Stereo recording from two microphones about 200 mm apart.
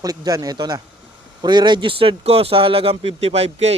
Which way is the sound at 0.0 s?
20° right (ahead or behind).